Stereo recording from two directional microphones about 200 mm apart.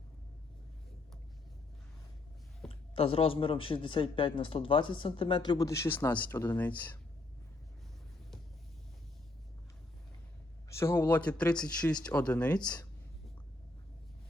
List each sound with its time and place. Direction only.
2.6 s speech: 30° left (ahead or behind); by 7.0 s 10° left (ahead or behind)
10.7 s speech: 15° left (ahead or behind)